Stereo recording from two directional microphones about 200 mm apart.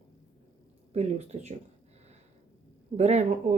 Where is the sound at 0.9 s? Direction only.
30° right (ahead or behind).